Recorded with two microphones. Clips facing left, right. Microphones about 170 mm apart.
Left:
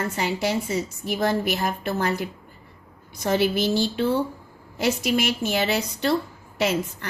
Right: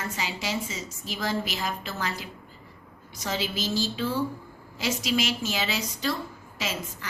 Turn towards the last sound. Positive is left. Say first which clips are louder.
# left 10 dB
turn(degrees=60)  # may be behind; listen again after turning